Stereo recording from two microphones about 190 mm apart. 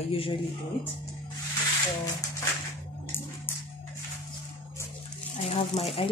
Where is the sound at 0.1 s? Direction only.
30° left (ahead or behind).